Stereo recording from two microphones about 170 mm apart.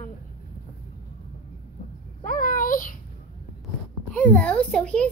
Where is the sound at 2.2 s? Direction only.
50° left (ahead or behind).